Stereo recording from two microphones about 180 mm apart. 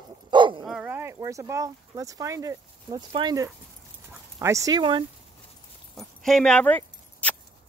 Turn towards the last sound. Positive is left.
turn(degrees=10)  # may be behind; listen again after turning